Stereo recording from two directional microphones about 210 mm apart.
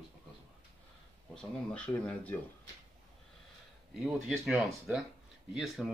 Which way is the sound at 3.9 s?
5° right (ahead or behind).